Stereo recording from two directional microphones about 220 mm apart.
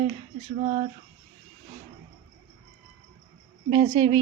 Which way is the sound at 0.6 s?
35° right (ahead or behind).